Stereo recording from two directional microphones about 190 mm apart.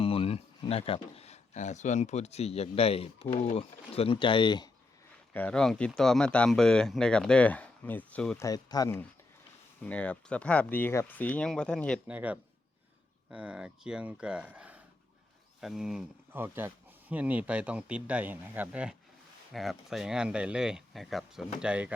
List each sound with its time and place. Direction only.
0.0 s speech: 30° left (ahead or behind)
5.3 s speech: 5° left (ahead or behind)
8.4 s speech: 20° left (ahead or behind)
9.8 s speech: 5° left (ahead or behind)
12.0 s speech: 5° right (ahead or behind)